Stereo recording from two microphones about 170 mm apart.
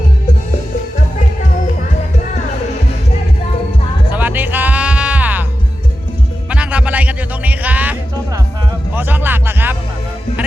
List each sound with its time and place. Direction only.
4.1 s music: 10° right (ahead or behind)
6.5 s music: 5° right (ahead or behind)
9.0 s music: 10° right (ahead or behind)